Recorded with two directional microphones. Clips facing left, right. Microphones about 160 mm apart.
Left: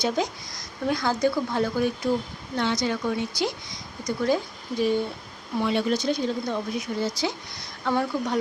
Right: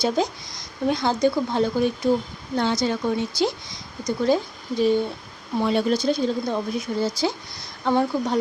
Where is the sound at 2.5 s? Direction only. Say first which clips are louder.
Right 3 dB; 35° right (ahead or behind).